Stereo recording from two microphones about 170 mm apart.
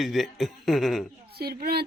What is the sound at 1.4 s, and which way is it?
Speech, 65° right (ahead or behind).